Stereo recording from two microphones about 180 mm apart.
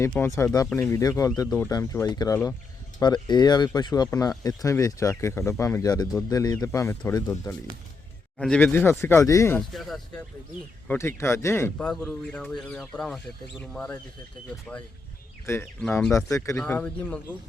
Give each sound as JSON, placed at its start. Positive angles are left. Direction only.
{"t": 0.2, "sound": "speech", "side_deg": 15}
{"t": 3.0, "sound": "speech", "side_deg": 25}
{"t": 8.4, "sound": "speech", "side_deg": 5}
{"t": 9.6, "sound": "speech", "side_deg": 0}
{"t": 10.8, "sound": "speech", "side_deg": 15}
{"t": 15.5, "sound": "speech", "side_deg": 15}
{"t": 15.8, "sound": "speech", "side_deg": 5}
{"t": 16.1, "sound": "speech", "side_deg": 15}